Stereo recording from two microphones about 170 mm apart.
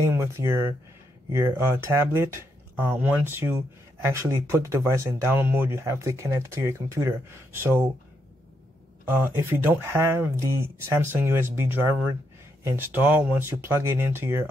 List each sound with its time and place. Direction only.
0.0 s speech: 15° right (ahead or behind)
9.2 s speech: 15° right (ahead or behind)